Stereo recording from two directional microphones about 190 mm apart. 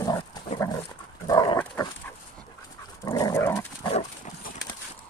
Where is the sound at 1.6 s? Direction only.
10° left (ahead or behind).